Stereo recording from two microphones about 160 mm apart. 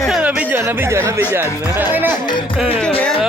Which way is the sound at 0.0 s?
5° right (ahead or behind).